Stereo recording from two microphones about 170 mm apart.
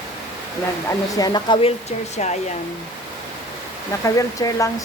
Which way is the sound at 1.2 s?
25° left (ahead or behind).